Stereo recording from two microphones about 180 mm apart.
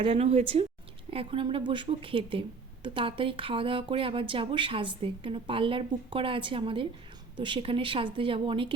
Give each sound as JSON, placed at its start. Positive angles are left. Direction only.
{"t": 0.0, "sound": "speech", "side_deg": -35}